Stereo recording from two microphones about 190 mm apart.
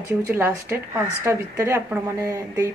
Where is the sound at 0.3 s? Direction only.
10° right (ahead or behind).